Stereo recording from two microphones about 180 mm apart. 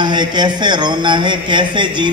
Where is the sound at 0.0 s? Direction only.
25° right (ahead or behind).